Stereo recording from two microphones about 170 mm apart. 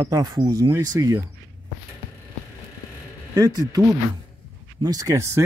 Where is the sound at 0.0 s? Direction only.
20° right (ahead or behind).